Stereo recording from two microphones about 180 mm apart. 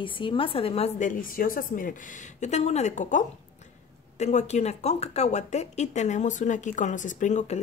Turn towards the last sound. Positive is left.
turn(degrees=40)  # may be behind; listen again after turning